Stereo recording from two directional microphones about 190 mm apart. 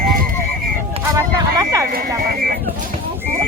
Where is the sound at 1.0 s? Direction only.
15° right (ahead or behind).